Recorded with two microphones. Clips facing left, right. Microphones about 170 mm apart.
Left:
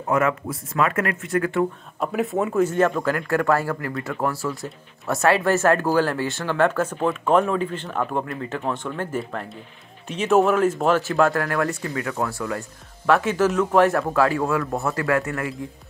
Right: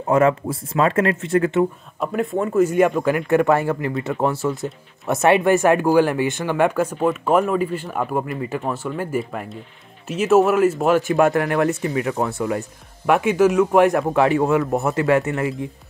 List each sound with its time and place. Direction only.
0.1 s speech: 30° right (ahead or behind)
2.0 s speech: centre (ahead or behind)
2.6 s speech: 10° right (ahead or behind)